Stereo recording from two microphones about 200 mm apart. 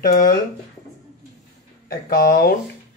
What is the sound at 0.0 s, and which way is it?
Speech, 45° left (ahead or behind).